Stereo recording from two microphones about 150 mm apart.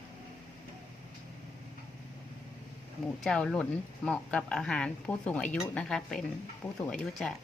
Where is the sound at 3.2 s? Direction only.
5° left (ahead or behind).